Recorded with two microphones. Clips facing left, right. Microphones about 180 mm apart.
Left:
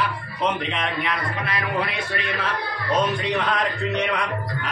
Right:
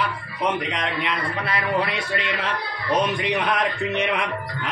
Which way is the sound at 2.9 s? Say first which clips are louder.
Even; 15° right (ahead or behind).